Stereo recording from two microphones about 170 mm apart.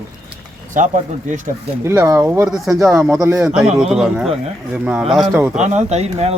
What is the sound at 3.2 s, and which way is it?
Speech, 15° right (ahead or behind).